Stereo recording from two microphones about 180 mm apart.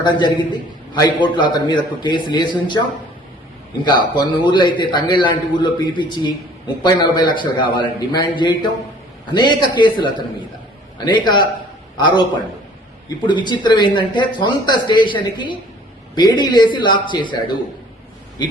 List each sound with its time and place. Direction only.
0.0 s speech: 25° left (ahead or behind)
3.8 s speech: 25° left (ahead or behind)
13.2 s speech: 25° left (ahead or behind)